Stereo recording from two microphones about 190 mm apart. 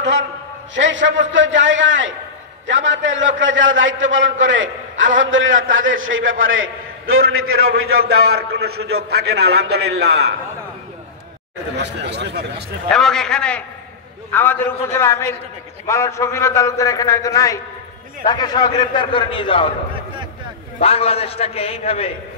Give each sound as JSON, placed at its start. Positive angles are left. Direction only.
{"t": 0.7, "sound": "a man's voice", "side_deg": -75}
{"t": 7.9, "sound": "a man's voice", "side_deg": -55}
{"t": 11.7, "sound": "a man's voice", "side_deg": -65}
{"t": 12.9, "sound": "a man's voice", "side_deg": 5}
{"t": 20.8, "sound": "a man's voice", "side_deg": 30}